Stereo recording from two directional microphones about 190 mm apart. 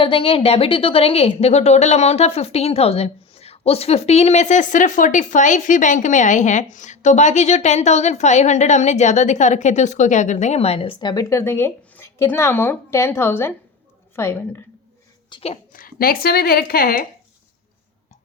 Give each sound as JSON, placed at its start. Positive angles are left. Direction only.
{"t": 0.0, "sound": "a woman's voice", "side_deg": 30}
{"t": 15.3, "sound": "speech", "side_deg": 30}
{"t": 15.7, "sound": "speech", "side_deg": 50}